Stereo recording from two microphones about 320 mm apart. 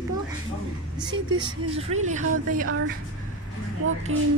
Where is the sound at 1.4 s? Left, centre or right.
Centre.